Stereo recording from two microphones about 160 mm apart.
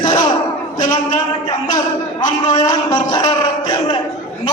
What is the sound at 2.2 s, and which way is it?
A man's voice, 25° left (ahead or behind).